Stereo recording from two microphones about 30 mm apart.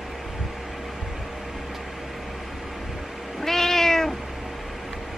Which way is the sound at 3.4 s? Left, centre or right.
Centre.